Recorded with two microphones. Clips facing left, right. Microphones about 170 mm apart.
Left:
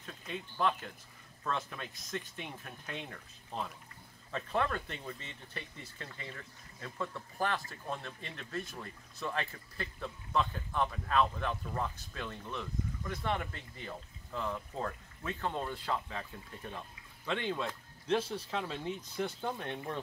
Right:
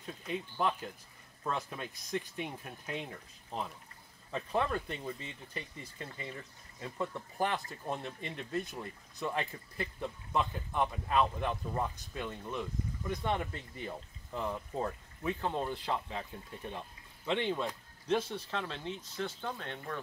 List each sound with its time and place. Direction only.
0.0 s speech: 10° right (ahead or behind)
18.1 s speech: 5° left (ahead or behind)